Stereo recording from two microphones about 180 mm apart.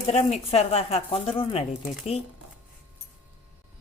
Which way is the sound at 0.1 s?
35° left (ahead or behind).